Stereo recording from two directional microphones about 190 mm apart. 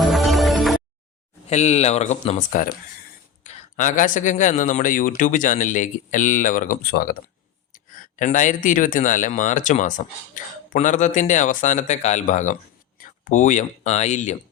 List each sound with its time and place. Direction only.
0.0 s music: centre (ahead or behind)
1.5 s a man's voice: 35° left (ahead or behind)